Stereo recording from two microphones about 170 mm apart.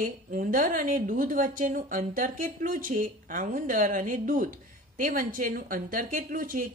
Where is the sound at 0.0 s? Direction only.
50° right (ahead or behind).